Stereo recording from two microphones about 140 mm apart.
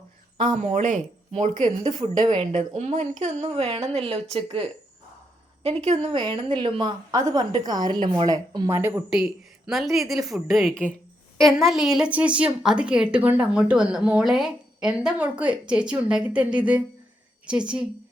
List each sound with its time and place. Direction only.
0.5 s speech: 60° right (ahead or behind)
1.8 s speech: 30° right (ahead or behind)
2.4 s a woman's voice: 55° right (ahead or behind); by 4.7 s 40° right (ahead or behind)
5.6 s a woman's voice: 50° right (ahead or behind)
6.3 s a woman's voice: 35° right (ahead or behind); by 9.0 s 15° right (ahead or behind)
9.0 s a woman's voice: 5° right (ahead or behind)